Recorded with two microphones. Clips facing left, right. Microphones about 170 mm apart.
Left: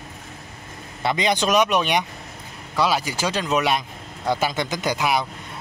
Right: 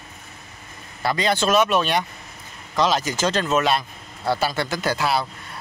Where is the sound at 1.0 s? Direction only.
20° left (ahead or behind).